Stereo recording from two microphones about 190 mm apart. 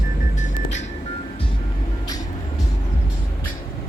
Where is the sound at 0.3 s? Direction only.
40° left (ahead or behind).